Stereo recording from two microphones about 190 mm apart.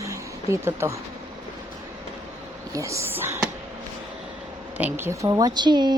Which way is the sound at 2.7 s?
15° right (ahead or behind).